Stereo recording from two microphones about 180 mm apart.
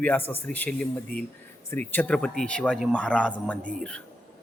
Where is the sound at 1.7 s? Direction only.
10° left (ahead or behind).